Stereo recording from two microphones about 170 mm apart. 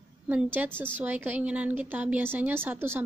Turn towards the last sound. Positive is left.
turn(degrees=-10)  # may be behind; listen again after turning